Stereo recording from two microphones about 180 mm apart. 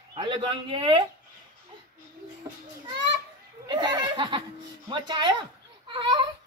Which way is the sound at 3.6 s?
25° right (ahead or behind).